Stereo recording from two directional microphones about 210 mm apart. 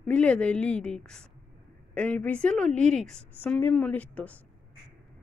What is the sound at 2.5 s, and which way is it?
Speech, 35° right (ahead or behind).